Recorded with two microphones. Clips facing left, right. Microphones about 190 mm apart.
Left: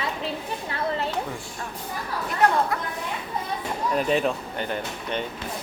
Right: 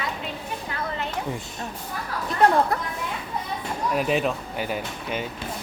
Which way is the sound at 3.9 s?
5° right (ahead or behind).